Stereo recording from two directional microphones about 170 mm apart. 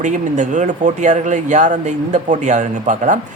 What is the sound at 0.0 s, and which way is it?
Speech, 45° right (ahead or behind).